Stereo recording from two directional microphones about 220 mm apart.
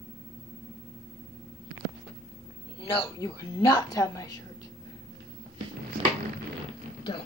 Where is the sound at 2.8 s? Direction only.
25° left (ahead or behind).